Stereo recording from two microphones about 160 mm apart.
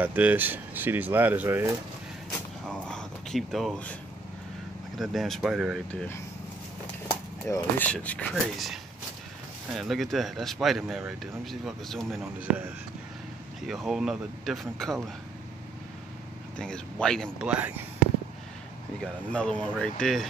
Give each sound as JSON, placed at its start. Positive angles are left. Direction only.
{"t": 0.0, "sound": "speech", "side_deg": -10}
{"t": 2.6, "sound": "a sound", "side_deg": 5}
{"t": 4.9, "sound": "speech", "side_deg": 0}
{"t": 5.9, "sound": "speech", "side_deg": 15}
{"t": 7.4, "sound": "speech", "side_deg": 20}
{"t": 12.4, "sound": "speech", "side_deg": -10}
{"t": 16.5, "sound": "speech", "side_deg": 5}
{"t": 17.4, "sound": "speech", "side_deg": -10}
{"t": 18.9, "sound": "speech", "side_deg": 5}